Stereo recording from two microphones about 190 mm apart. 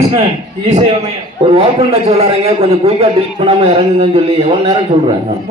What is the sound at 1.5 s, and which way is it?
A man's voice, 30° right (ahead or behind).